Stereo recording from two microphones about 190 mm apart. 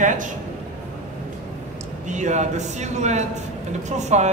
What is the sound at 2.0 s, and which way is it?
A man's voice, 40° right (ahead or behind).